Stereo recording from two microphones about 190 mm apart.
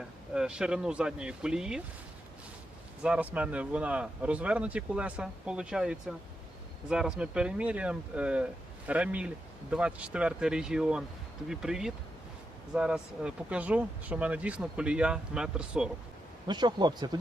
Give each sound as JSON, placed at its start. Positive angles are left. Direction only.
{"t": 0.3, "sound": "speech", "side_deg": -5}
{"t": 3.0, "sound": "speech", "side_deg": -5}
{"t": 16.5, "sound": "speech", "side_deg": -20}